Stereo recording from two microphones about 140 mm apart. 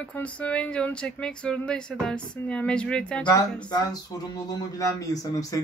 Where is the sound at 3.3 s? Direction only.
30° left (ahead or behind).